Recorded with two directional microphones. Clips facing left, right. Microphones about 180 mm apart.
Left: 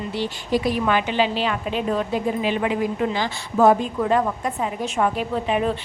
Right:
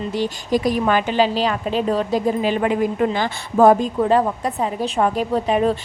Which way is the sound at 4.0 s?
30° right (ahead or behind).